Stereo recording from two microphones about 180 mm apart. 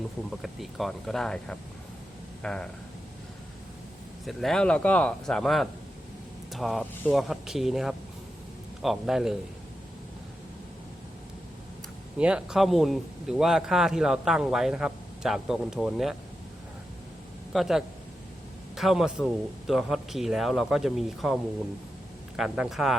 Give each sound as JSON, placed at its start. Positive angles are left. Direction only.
{"t": 0.3, "sound": "speech", "side_deg": 0}
{"t": 4.3, "sound": "speech", "side_deg": 0}
{"t": 12.1, "sound": "speech", "side_deg": -5}
{"t": 17.5, "sound": "speech", "side_deg": 0}
{"t": 22.4, "sound": "speech", "side_deg": -5}